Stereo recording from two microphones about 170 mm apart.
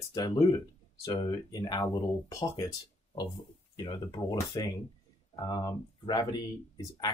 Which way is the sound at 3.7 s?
25° left (ahead or behind).